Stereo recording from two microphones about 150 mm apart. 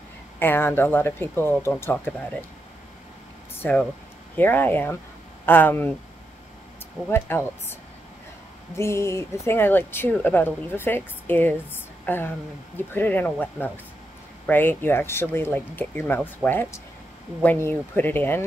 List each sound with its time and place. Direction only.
0.4 s speech: 15° left (ahead or behind)
4.4 s speech: 15° left (ahead or behind)
7.1 s speech: 15° left (ahead or behind)
8.7 s speech: 20° left (ahead or behind)